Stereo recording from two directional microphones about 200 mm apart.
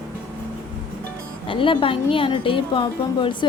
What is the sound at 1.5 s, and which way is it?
Speech, 25° left (ahead or behind).